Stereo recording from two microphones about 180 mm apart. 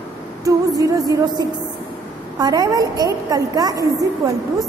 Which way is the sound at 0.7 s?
20° right (ahead or behind).